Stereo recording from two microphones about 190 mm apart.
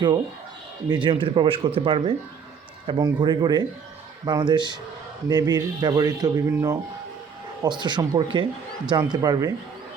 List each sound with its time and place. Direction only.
0.9 s speech: 25° right (ahead or behind)